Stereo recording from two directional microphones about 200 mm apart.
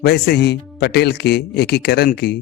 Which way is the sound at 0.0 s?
55° left (ahead or behind).